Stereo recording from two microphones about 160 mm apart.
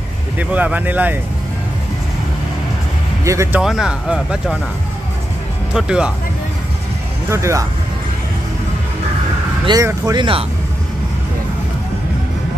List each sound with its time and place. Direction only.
0.4 s speech: 10° right (ahead or behind)
3.3 s speech: 20° right (ahead or behind)
3.6 s speech: 5° right (ahead or behind)
5.8 s speech: 5° right (ahead or behind)
7.2 s speech: 20° right (ahead or behind)
9.7 s speech: 20° right (ahead or behind)